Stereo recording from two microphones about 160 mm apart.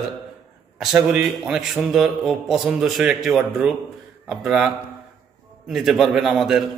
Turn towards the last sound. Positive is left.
turn(degrees=0)  # may be behind; listen again after turning